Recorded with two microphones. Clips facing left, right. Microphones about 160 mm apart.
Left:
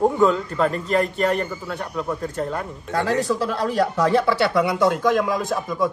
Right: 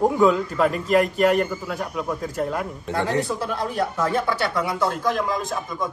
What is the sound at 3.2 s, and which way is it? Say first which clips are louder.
Speech: left 4 dB; 90° left.